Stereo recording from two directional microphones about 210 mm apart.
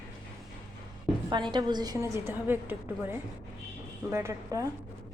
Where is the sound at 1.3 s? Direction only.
20° right (ahead or behind).